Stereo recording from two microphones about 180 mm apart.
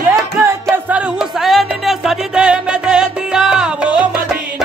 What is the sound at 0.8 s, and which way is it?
Music, 5° right (ahead or behind).